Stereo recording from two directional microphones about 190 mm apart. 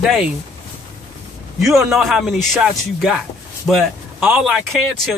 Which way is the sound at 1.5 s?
Centre (ahead or behind).